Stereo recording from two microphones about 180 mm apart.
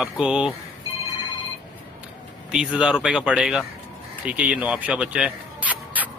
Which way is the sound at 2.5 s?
5° right (ahead or behind).